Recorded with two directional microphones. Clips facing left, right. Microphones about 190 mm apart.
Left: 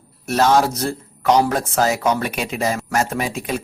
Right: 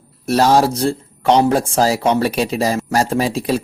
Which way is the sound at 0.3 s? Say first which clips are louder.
Right 3 dB; 35° right (ahead or behind).